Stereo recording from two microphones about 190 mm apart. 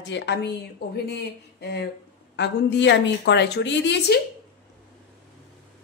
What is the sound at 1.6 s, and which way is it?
A woman's voice, 60° left (ahead or behind).